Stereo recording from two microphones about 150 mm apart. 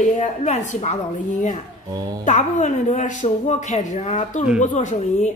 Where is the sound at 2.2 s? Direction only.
55° left (ahead or behind).